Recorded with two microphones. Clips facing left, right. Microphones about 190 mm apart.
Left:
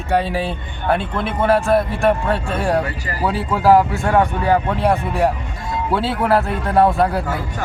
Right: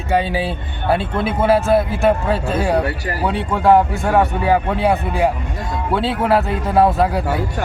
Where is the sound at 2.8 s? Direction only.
70° right (ahead or behind).